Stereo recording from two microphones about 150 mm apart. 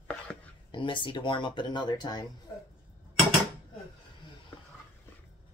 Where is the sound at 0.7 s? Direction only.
35° left (ahead or behind).